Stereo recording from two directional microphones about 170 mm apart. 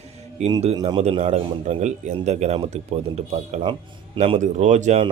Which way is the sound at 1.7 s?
45° right (ahead or behind).